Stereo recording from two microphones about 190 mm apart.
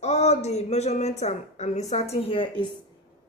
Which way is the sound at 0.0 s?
35° left (ahead or behind).